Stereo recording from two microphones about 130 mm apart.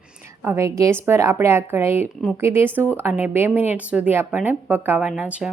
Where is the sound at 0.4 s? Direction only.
20° right (ahead or behind).